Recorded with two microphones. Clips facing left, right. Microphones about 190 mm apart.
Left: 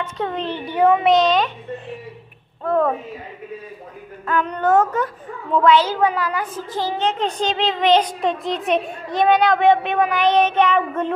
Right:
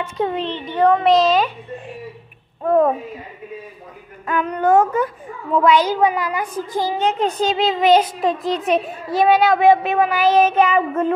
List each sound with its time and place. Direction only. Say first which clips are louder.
0.0 s a child's voice: right 3 dB; 10° right (ahead or behind)
0.5 s a child's voice: left 1 dB; 10° left (ahead or behind); by 2.9 s 15° right (ahead or behind)
4.3 s a child's voice: right 2 dB; 10° right (ahead or behind)